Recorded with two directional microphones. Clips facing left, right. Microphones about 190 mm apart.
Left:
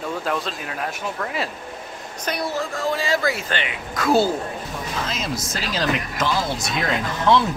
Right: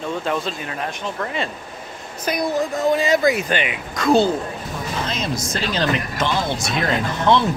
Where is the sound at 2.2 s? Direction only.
15° right (ahead or behind).